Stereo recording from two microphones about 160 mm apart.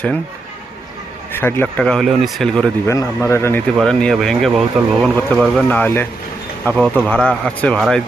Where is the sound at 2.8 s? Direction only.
20° left (ahead or behind).